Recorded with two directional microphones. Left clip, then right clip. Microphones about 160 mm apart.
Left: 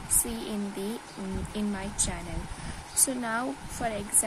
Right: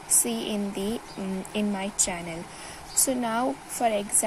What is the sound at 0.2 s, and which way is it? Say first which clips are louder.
A woman's voice: right 5 dB; 20° right (ahead or behind).